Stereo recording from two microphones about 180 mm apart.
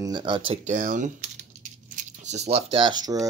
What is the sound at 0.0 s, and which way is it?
Speech, 25° right (ahead or behind).